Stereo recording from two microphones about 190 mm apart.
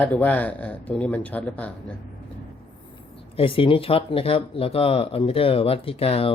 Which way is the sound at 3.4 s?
30° left (ahead or behind).